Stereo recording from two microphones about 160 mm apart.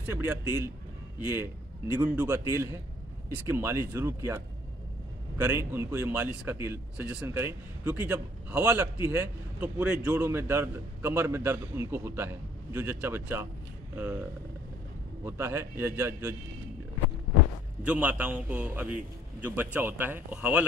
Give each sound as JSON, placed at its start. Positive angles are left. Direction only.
{"t": 0.1, "sound": "speech", "side_deg": -15}
{"t": 5.4, "sound": "speech", "side_deg": -15}
{"t": 15.2, "sound": "speech", "side_deg": -15}
{"t": 17.8, "sound": "speech", "side_deg": -10}